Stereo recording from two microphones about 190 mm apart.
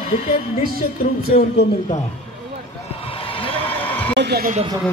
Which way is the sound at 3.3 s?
30° left (ahead or behind).